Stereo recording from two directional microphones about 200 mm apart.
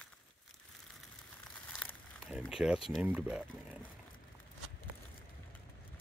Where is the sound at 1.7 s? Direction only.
5° left (ahead or behind).